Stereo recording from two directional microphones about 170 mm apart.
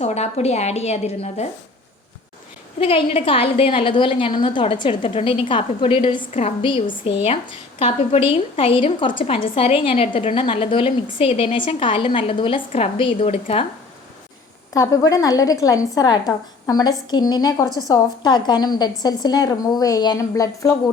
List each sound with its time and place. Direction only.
0.0 s a woman's voice: 40° left (ahead or behind)
2.8 s a woman's voice: 35° left (ahead or behind)
14.7 s a woman's voice: 20° left (ahead or behind)